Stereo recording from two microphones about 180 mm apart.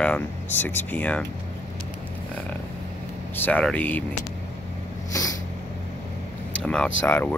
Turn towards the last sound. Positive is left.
turn(degrees=10)  # may be behind; listen again after turning